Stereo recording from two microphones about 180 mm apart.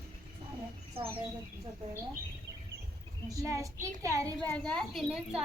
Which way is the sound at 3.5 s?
15° right (ahead or behind).